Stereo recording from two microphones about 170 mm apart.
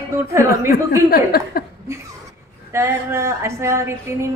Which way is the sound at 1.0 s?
60° left (ahead or behind).